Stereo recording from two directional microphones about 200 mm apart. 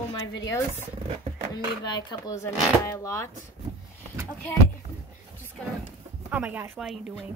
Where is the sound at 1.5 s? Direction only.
20° left (ahead or behind).